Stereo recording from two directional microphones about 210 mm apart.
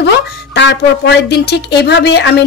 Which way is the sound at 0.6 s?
55° left (ahead or behind).